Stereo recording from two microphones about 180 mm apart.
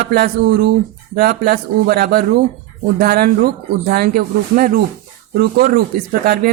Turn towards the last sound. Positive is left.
turn(degrees=-55)  # may be behind; listen again after turning